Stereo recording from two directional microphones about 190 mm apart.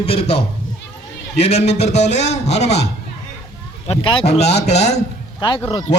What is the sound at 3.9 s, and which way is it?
A man's voice, 30° left (ahead or behind).